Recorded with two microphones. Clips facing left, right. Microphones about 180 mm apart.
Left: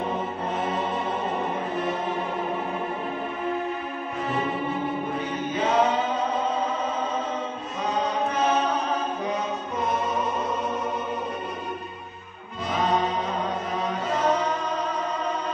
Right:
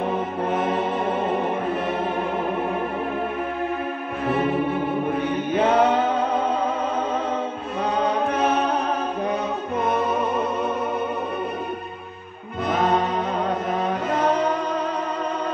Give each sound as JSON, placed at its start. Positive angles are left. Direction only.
{"t": 5.1, "sound": "chant", "side_deg": -60}
{"t": 8.0, "sound": "chant", "side_deg": -55}
{"t": 12.6, "sound": "music", "side_deg": -60}